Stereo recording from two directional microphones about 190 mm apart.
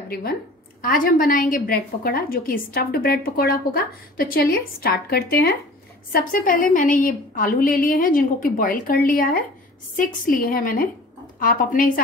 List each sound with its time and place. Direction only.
0.1 s a woman's voice: 50° left (ahead or behind)